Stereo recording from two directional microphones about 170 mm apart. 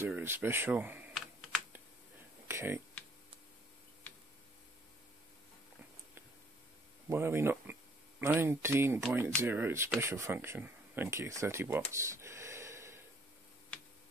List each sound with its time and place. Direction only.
0.0 s typing: 15° right (ahead or behind)
2.4 s a sound: 15° right (ahead or behind)
7.1 s speech: 15° right (ahead or behind)